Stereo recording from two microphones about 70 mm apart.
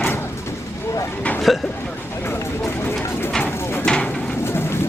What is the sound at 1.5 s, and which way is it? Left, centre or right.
Speech, centre.